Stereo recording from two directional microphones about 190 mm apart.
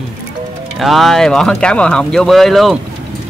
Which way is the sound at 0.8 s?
Centre (ahead or behind).